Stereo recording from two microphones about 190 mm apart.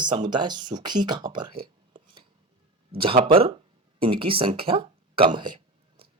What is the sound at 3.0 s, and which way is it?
Speech, 25° right (ahead or behind).